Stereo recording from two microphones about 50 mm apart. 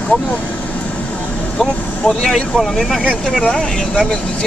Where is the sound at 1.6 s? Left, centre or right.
Centre.